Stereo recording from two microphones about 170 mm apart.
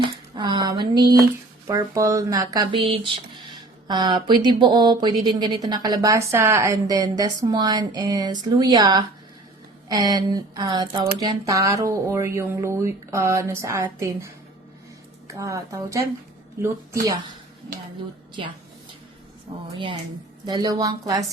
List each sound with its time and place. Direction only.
0.3 s a sound: 25° right (ahead or behind)
1.6 s speech: 20° right (ahead or behind)
15.3 s speech: 20° right (ahead or behind)
18.4 s a woman's voice: 30° right (ahead or behind)
19.7 s a woman's voice: 30° right (ahead or behind)